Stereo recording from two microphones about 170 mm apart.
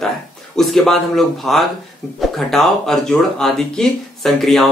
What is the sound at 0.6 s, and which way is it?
Speech, centre (ahead or behind).